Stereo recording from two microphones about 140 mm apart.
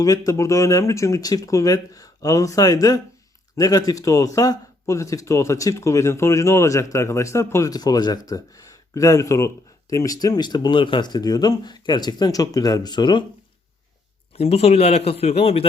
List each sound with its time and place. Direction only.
0.0 s speech: 25° left (ahead or behind)
14.3 s a man's voice: 45° left (ahead or behind)